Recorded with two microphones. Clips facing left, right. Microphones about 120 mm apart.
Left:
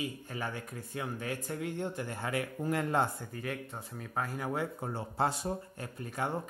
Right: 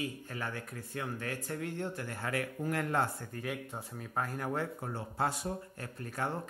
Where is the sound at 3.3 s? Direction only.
5° right (ahead or behind).